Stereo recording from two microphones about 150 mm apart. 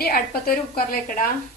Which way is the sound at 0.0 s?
85° left.